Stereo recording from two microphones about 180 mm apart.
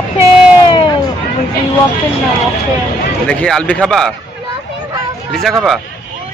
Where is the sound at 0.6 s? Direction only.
25° left (ahead or behind).